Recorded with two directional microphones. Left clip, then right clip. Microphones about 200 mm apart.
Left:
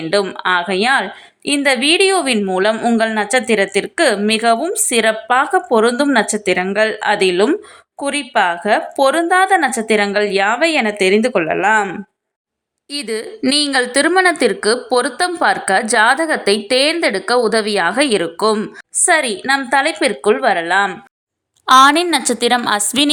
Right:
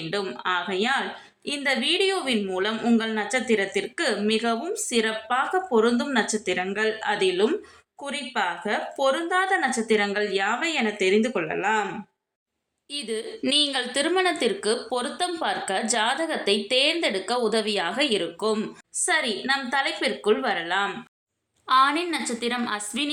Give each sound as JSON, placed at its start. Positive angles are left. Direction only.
{"t": 0.1, "sound": "a woman's voice", "side_deg": 40}
{"t": 12.9, "sound": "a woman's voice", "side_deg": 40}
{"t": 18.5, "sound": "a woman's voice", "side_deg": 35}